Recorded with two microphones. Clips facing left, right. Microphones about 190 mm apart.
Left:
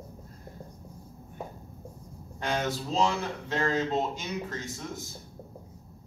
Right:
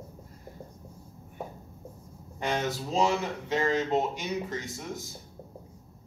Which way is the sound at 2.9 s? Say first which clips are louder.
Right 2 dB; 10° right (ahead or behind).